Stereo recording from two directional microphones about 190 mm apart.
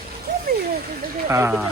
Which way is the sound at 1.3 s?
15° right (ahead or behind).